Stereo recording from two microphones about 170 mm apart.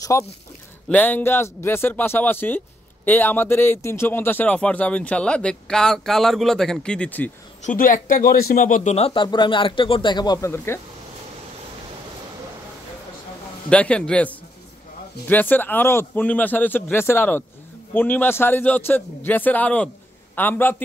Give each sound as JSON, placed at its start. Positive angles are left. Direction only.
{"t": 0.0, "sound": "a man's voice", "side_deg": 15}
{"t": 7.6, "sound": "speech", "side_deg": 50}
{"t": 13.7, "sound": "a man's voice", "side_deg": 5}